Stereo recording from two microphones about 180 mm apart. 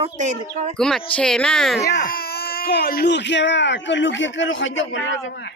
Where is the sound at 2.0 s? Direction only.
55° left (ahead or behind); by 5.3 s 90° left.